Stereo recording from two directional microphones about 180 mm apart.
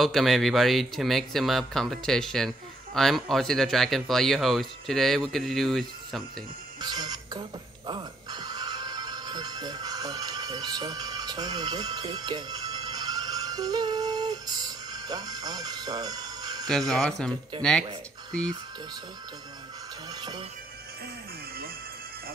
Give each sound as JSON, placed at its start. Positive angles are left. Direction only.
{"t": 0.0, "sound": "speech", "side_deg": 0}
{"t": 6.8, "sound": "music", "side_deg": -20}
{"t": 16.6, "sound": "speech", "side_deg": 5}
{"t": 20.2, "sound": "speech", "side_deg": -25}